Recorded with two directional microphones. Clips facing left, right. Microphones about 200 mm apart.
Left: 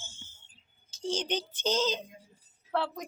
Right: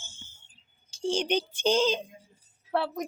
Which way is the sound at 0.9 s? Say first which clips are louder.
Right 5 dB; 10° right (ahead or behind).